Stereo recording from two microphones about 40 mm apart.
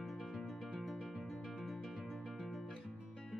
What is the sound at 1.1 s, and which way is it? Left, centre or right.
Guitar, centre.